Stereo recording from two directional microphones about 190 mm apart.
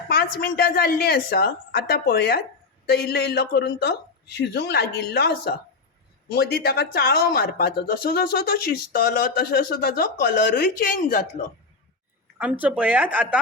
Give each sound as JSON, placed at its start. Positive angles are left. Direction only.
{"t": 0.1, "sound": "speech", "side_deg": 50}
{"t": 12.4, "sound": "speech", "side_deg": -5}